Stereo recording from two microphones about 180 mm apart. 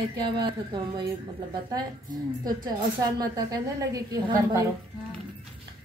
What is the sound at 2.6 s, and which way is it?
A woman's voice, 20° right (ahead or behind).